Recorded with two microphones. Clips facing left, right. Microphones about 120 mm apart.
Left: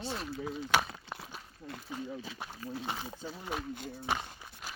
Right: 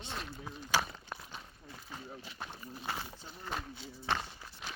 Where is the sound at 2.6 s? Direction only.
90° left.